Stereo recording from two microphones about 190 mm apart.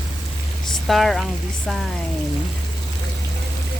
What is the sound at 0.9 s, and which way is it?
Frying, centre (ahead or behind).